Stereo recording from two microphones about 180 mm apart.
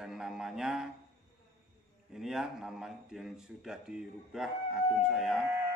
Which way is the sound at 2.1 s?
Centre (ahead or behind).